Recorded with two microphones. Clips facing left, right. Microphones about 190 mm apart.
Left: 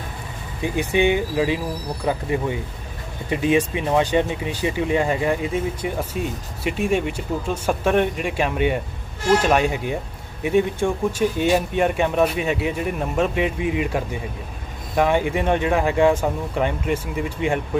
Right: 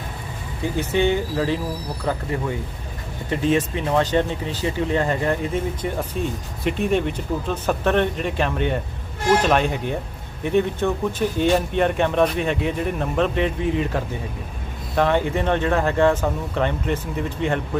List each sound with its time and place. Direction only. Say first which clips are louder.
0.6 s speech: left 1 dB; 15° left (ahead or behind)